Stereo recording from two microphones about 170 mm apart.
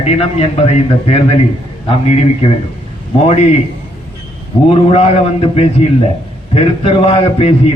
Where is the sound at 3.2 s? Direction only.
40° left (ahead or behind).